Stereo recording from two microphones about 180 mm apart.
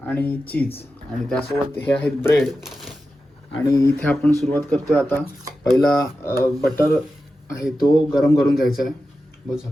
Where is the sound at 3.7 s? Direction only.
15° left (ahead or behind).